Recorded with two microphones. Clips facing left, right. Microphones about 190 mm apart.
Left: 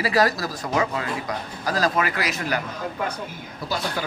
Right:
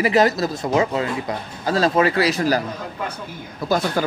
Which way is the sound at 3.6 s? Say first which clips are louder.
Right 8 dB; 50° right (ahead or behind).